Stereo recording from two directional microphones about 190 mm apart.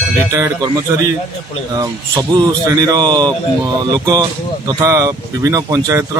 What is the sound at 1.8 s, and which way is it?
Speech, 20° right (ahead or behind).